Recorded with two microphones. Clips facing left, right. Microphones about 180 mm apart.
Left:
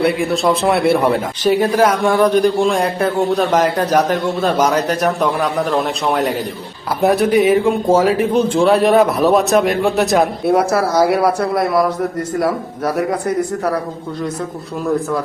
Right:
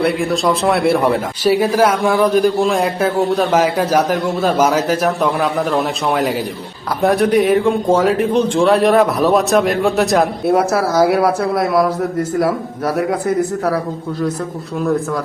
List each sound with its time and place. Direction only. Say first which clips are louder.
0.0 s speech: even; centre (ahead or behind)